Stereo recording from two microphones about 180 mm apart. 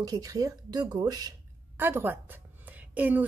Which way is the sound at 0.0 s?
20° right (ahead or behind).